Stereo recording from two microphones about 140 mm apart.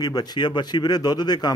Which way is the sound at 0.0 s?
30° left (ahead or behind).